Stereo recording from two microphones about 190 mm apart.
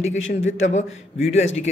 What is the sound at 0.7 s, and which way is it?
Speech, 40° left (ahead or behind).